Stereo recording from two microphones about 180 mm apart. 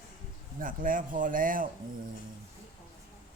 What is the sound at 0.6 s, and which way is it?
Speech, 50° right (ahead or behind).